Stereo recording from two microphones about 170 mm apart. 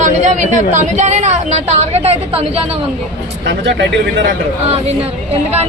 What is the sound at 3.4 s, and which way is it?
Speech, 90° right.